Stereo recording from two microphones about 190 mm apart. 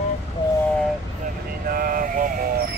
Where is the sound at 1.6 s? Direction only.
50° right (ahead or behind).